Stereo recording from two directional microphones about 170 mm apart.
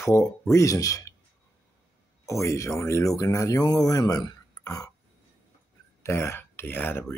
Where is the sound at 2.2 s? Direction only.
20° left (ahead or behind).